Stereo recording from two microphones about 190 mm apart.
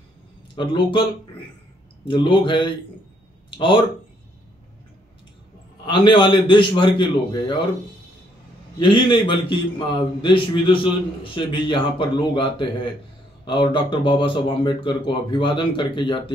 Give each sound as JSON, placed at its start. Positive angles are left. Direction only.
{"t": 0.6, "sound": "a man's voice", "side_deg": 25}
{"t": 2.0, "sound": "a man's voice", "side_deg": 25}
{"t": 5.9, "sound": "a man's voice", "side_deg": 25}
{"t": 8.7, "sound": "a man's voice", "side_deg": 25}